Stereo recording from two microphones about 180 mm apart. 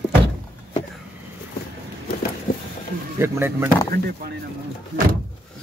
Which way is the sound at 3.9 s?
60° right (ahead or behind).